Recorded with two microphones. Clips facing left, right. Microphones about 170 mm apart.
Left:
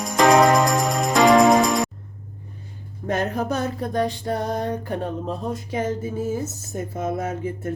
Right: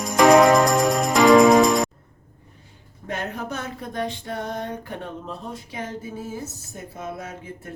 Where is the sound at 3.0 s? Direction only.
40° left (ahead or behind).